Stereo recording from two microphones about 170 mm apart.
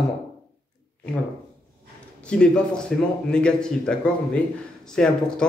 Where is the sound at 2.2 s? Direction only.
5° left (ahead or behind).